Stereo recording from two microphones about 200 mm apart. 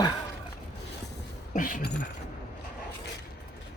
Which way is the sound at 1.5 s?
40° left (ahead or behind).